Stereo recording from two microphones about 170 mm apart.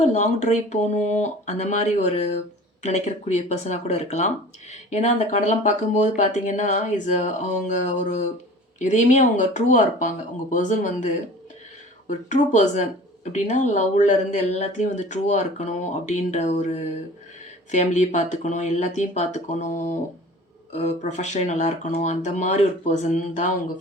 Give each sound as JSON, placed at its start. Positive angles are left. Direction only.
{"t": 0.0, "sound": "speech", "side_deg": 40}